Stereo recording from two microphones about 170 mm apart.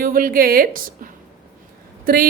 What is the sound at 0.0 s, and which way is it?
A woman's voice, 55° right (ahead or behind).